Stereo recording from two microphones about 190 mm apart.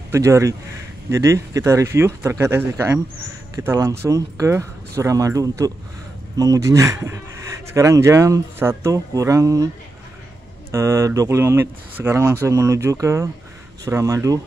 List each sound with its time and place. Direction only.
0.1 s speech: 15° right (ahead or behind)
10.7 s speech: 15° right (ahead or behind)